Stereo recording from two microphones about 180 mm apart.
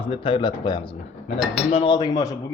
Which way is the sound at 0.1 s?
30° left (ahead or behind).